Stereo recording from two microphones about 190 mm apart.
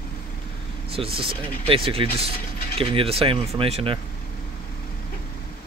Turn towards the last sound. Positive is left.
turn(degrees=-30)  # may be behind; listen again after turning